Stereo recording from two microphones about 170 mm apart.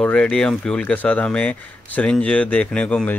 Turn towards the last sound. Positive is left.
turn(degrees=5)  # may be behind; listen again after turning